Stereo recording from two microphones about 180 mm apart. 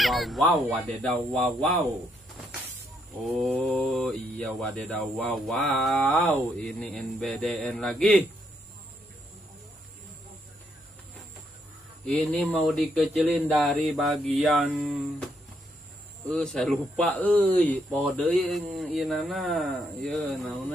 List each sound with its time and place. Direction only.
0.0 s a sound: centre (ahead or behind)
0.5 s speech: 5° left (ahead or behind)
3.1 s speech: centre (ahead or behind)
12.1 s speech: centre (ahead or behind)
16.3 s speech: 5° left (ahead or behind)